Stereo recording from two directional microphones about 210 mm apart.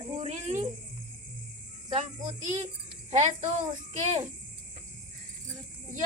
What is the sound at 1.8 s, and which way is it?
Speech, 30° right (ahead or behind).